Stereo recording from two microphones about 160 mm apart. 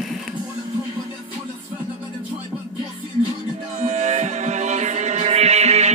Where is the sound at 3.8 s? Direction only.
45° right (ahead or behind).